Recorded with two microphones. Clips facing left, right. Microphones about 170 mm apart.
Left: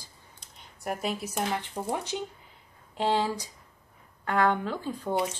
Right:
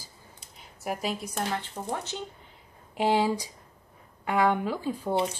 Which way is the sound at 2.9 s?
10° right (ahead or behind).